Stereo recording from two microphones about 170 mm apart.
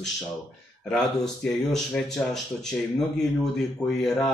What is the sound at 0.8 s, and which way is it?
Speech, 5° left (ahead or behind).